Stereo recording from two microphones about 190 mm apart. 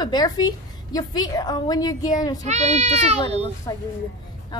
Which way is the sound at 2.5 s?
35° right (ahead or behind).